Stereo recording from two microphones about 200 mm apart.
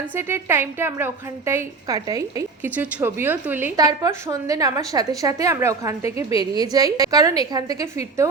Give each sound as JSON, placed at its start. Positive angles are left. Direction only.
{"t": 0.2, "sound": "a woman's voice", "side_deg": -10}